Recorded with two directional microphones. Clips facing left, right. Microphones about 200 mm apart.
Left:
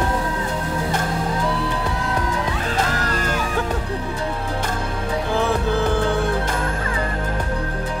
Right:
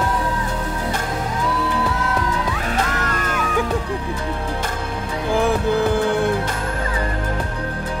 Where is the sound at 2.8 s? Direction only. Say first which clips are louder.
Left 1 dB; 35° left (ahead or behind).